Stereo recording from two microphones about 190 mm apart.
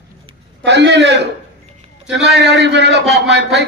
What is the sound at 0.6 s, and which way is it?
A man's voice, 65° right (ahead or behind).